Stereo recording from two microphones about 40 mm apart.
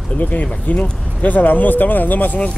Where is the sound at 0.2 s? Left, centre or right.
Left.